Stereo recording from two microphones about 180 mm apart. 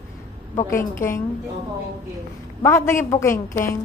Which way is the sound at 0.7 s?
15° left (ahead or behind).